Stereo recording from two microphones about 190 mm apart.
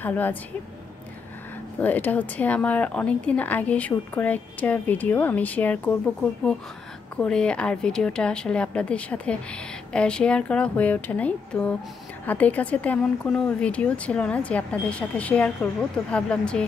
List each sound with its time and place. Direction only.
0.0 s a woman's voice: 10° left (ahead or behind)
1.8 s a woman's voice: 10° left (ahead or behind)
7.2 s a woman's voice: 5° left (ahead or behind)